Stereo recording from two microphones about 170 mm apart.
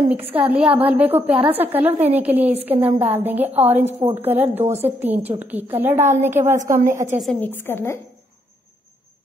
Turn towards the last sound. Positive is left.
turn(degrees=15)  # may be behind; listen again after turning